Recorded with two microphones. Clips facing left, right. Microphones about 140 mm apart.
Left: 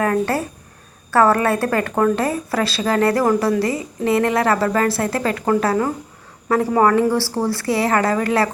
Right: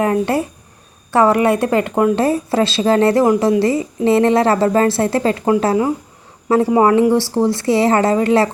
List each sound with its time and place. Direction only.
0.0 s a woman's voice: 20° right (ahead or behind)